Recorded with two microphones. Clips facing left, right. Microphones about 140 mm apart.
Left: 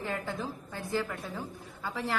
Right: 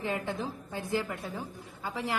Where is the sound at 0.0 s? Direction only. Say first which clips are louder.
Right 2 dB; 20° right (ahead or behind).